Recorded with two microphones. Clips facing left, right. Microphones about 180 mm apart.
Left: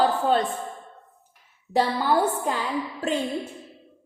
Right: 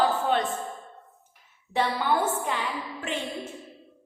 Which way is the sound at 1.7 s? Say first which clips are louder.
Left 3 dB; 35° left (ahead or behind).